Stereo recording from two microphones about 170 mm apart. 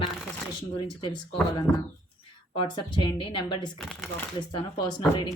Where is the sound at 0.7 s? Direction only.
25° left (ahead or behind).